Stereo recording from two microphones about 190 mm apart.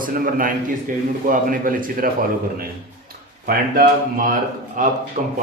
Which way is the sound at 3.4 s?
45° right (ahead or behind).